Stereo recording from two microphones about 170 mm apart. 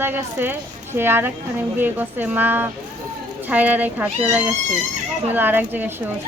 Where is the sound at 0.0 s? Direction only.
10° right (ahead or behind).